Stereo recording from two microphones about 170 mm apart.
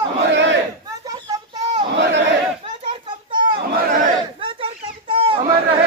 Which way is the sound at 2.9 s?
30° right (ahead or behind).